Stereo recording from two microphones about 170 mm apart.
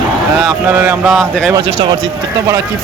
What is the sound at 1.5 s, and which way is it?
Speech, 25° right (ahead or behind).